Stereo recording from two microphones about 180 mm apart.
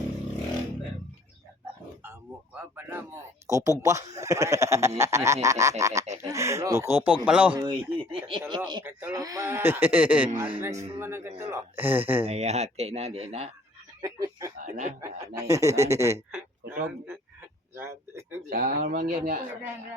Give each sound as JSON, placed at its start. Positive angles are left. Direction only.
{"t": 2.6, "sound": "speech", "side_deg": -15}
{"t": 7.5, "sound": "speech", "side_deg": -30}
{"t": 8.8, "sound": "speech", "side_deg": -10}
{"t": 12.2, "sound": "speech", "side_deg": -35}
{"t": 14.0, "sound": "speech", "side_deg": -20}
{"t": 14.6, "sound": "speech", "side_deg": -40}
{"t": 15.4, "sound": "speech", "side_deg": -15}
{"t": 17.7, "sound": "speech", "side_deg": -15}
{"t": 18.4, "sound": "speech", "side_deg": -50}